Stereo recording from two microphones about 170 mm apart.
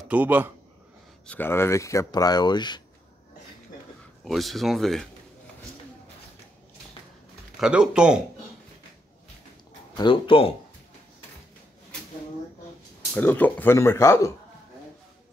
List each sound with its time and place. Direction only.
0.1 s speech: 10° right (ahead or behind)
1.2 s speech: 10° left (ahead or behind); by 2.8 s 25° left (ahead or behind)
4.2 s speech: centre (ahead or behind)
7.6 s speech: 5° right (ahead or behind)
9.9 s speech: 30° left (ahead or behind)
13.1 s speech: 10° left (ahead or behind)